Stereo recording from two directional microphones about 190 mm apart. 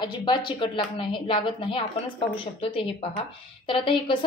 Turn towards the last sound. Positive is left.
turn(degrees=25)  # may be behind; listen again after turning